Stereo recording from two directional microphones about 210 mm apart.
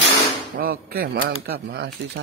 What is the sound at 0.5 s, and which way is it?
Speech, 45° right (ahead or behind).